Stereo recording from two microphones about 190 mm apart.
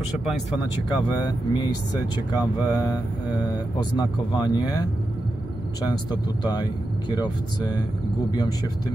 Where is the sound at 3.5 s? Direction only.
20° left (ahead or behind).